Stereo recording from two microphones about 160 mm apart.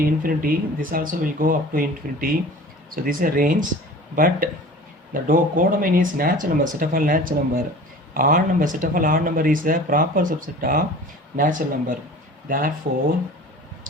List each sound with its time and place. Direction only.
0.0 s speech: 65° right (ahead or behind)